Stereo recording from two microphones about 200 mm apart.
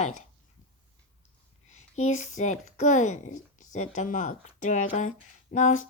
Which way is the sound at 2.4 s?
35° left (ahead or behind).